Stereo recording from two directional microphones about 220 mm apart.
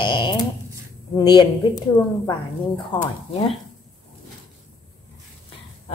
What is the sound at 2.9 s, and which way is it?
Speech, 25° left (ahead or behind).